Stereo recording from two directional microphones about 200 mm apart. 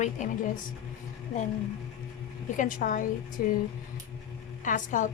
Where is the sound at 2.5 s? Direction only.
40° left (ahead or behind).